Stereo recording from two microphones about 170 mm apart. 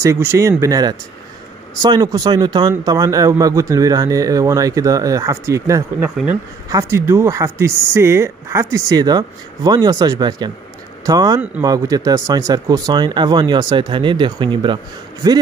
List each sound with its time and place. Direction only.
0.0 s speech: 15° right (ahead or behind)